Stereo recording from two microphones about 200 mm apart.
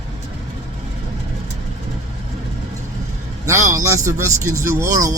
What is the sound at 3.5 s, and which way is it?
Speech, 15° right (ahead or behind).